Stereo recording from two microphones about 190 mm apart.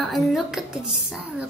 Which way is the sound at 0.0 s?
Centre (ahead or behind).